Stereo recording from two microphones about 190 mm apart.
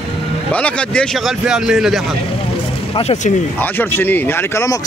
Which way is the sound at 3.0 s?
35° left (ahead or behind).